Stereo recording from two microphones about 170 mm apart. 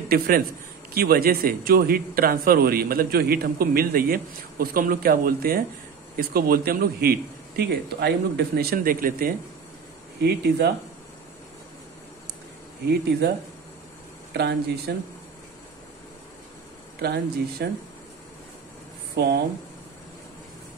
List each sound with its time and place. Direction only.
0.9 s a man's voice: 60° right (ahead or behind)
10.2 s speech: 70° right (ahead or behind)
12.8 s speech: 75° right (ahead or behind)
14.3 s speech: 75° right (ahead or behind)
17.0 s speech: 70° right (ahead or behind)
19.1 s speech: 60° right (ahead or behind)